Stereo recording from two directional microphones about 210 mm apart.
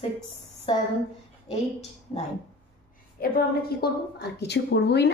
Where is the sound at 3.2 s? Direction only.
45° left (ahead or behind).